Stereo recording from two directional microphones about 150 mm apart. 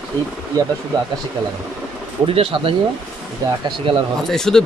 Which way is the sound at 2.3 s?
35° right (ahead or behind).